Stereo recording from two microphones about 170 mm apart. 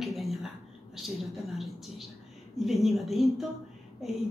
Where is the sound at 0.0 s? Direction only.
Centre (ahead or behind).